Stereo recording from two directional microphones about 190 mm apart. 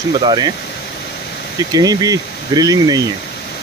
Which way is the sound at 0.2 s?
25° right (ahead or behind).